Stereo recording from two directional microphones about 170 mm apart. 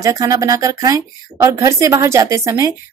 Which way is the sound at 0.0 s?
20° right (ahead or behind).